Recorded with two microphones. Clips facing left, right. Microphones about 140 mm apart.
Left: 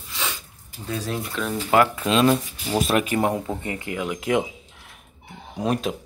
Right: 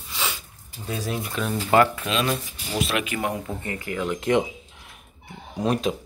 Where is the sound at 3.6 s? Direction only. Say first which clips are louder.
Even; 20° left (ahead or behind).